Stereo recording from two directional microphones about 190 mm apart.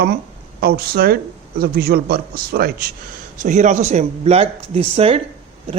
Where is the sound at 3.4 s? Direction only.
40° right (ahead or behind).